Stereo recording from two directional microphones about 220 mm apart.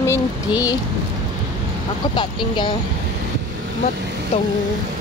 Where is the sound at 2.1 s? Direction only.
20° left (ahead or behind).